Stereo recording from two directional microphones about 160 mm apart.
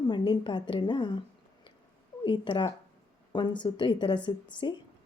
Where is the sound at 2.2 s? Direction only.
30° left (ahead or behind).